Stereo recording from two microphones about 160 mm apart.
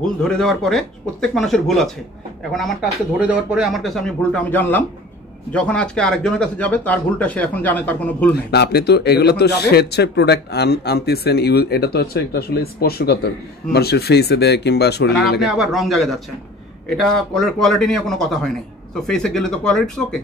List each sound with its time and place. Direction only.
0.0 s speech: 5° left (ahead or behind)
8.3 s a man's voice: 90° left
15.4 s speech: centre (ahead or behind)